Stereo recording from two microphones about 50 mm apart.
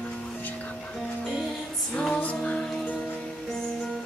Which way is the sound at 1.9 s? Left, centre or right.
Centre.